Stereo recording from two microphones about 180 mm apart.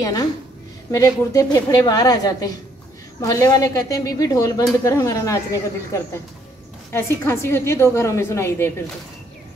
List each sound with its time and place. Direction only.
0.0 s speech: 20° left (ahead or behind)
6.9 s a woman's voice: 15° left (ahead or behind)